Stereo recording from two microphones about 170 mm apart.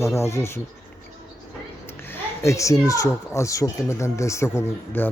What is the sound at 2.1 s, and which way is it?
Speech, 15° left (ahead or behind).